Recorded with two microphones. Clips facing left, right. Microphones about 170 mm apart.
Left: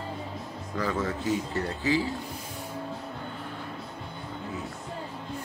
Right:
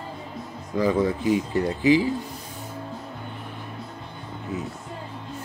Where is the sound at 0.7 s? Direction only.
15° right (ahead or behind).